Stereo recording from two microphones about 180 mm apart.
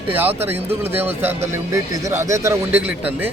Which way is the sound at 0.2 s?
10° right (ahead or behind).